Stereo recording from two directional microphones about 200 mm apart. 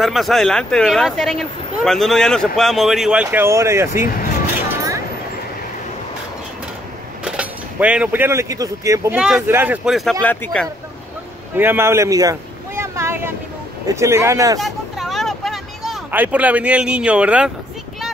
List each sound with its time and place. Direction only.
0.0 s speech: centre (ahead or behind)
7.2 s speech: 5° right (ahead or behind)
10.2 s speech: 10° left (ahead or behind)
11.5 s a sound: 10° right (ahead or behind)
13.8 s a man's voice: 15° right (ahead or behind)
14.6 s vehicle: centre (ahead or behind)